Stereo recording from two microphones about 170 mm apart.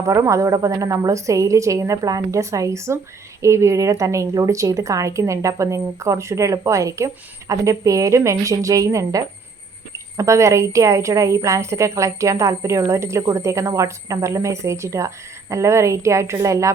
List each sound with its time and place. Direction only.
0.0 s a woman's voice: 20° right (ahead or behind)